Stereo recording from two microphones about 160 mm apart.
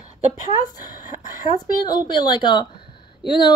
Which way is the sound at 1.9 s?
25° left (ahead or behind).